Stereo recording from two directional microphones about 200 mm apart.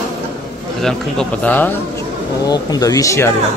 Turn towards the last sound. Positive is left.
turn(degrees=15)  # may be behind; listen again after turning